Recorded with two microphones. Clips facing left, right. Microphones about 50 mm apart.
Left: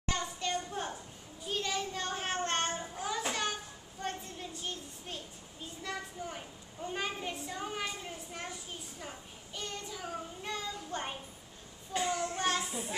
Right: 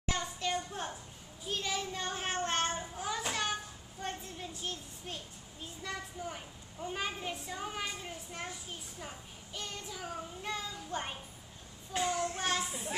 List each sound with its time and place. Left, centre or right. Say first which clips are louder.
0.0 s a sound: even; centre
1.4 s child singing: left 1 dB; centre
5.8 s a child's voice: left 1 dB; centre